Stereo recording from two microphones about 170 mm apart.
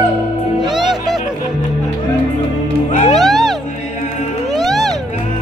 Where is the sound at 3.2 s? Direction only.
Centre (ahead or behind).